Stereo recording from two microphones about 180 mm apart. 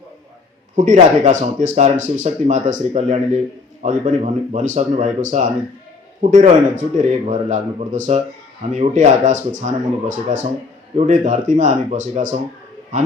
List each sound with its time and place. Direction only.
0.8 s speech: 45° right (ahead or behind)